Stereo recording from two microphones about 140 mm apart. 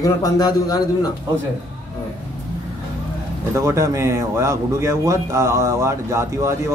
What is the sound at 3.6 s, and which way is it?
A man's voice, 20° right (ahead or behind).